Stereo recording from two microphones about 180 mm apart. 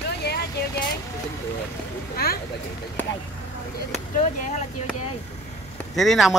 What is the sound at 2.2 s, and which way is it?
Vehicle, 60° left (ahead or behind).